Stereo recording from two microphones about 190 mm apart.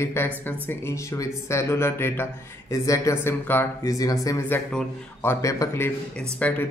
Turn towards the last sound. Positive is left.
turn(degrees=5)  # may be behind; listen again after turning